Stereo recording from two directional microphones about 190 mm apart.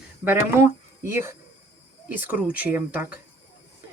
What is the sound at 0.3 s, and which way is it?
Speech, 15° right (ahead or behind).